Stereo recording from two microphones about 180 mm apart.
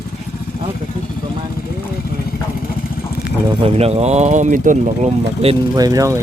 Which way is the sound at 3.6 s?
35° right (ahead or behind).